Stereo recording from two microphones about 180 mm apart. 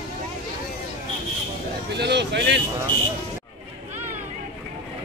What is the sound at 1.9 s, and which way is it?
Speech, 70° right (ahead or behind).